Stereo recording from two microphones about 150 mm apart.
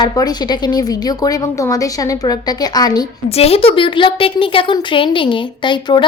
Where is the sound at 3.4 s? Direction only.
40° left (ahead or behind).